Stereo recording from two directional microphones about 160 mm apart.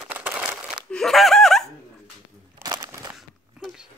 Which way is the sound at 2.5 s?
25° right (ahead or behind).